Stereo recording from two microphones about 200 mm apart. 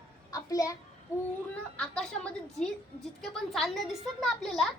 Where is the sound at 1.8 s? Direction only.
5° left (ahead or behind).